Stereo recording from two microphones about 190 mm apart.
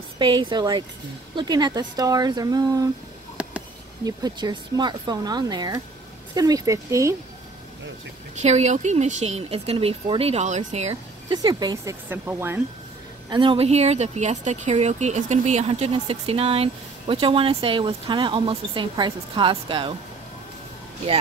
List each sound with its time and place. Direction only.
0.2 s speech: 25° right (ahead or behind)
3.4 s a sound: 5° right (ahead or behind)
4.0 s speech: 20° right (ahead or behind)
8.4 s speech: 35° right (ahead or behind)
11.3 s speech: 20° right (ahead or behind)
13.3 s speech: 25° right (ahead or behind)